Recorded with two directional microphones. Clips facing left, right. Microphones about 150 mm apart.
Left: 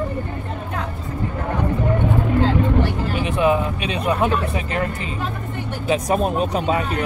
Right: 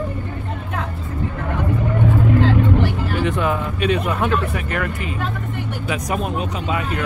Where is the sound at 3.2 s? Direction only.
15° left (ahead or behind).